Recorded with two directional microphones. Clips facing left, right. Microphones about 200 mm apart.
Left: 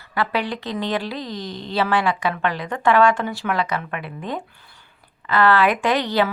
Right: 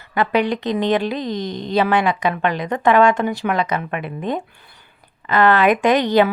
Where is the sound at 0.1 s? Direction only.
20° right (ahead or behind).